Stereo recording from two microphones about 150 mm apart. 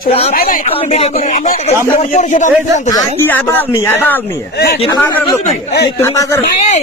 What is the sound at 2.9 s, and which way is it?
Speech, 25° left (ahead or behind).